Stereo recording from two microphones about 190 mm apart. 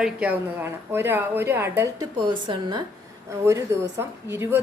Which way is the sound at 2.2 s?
25° right (ahead or behind).